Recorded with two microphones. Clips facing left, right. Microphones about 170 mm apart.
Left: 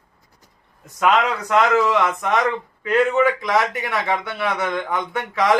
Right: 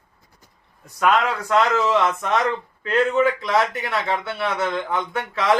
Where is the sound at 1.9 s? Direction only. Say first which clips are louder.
Even; 15° left (ahead or behind).